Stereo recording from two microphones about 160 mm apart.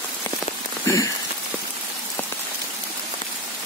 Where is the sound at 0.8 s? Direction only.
20° left (ahead or behind).